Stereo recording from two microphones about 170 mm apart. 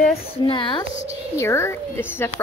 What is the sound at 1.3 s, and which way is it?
Speech, 15° left (ahead or behind).